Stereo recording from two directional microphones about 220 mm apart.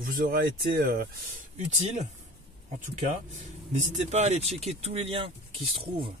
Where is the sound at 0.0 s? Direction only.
40° right (ahead or behind).